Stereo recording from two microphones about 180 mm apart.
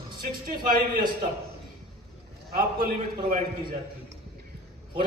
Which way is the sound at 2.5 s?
50° right (ahead or behind).